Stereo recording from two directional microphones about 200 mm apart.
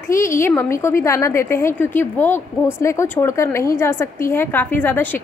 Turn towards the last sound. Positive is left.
turn(degrees=10)  # may be behind; listen again after turning